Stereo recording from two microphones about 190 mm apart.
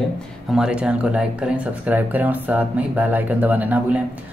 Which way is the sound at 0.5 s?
5° right (ahead or behind).